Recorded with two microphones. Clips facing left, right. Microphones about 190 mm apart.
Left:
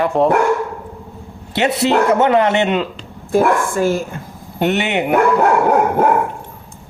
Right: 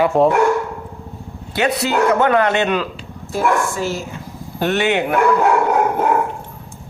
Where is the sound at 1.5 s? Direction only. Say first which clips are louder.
Left 3 dB; 25° left (ahead or behind).